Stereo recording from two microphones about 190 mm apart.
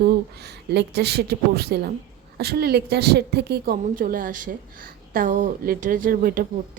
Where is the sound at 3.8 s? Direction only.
45° right (ahead or behind).